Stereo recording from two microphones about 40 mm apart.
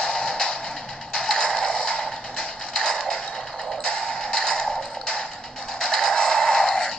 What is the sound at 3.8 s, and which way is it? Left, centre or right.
Music, left.